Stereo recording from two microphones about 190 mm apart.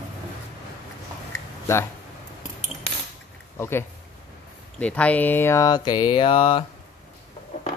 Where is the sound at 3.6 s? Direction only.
15° left (ahead or behind); by 6.6 s 30° left (ahead or behind).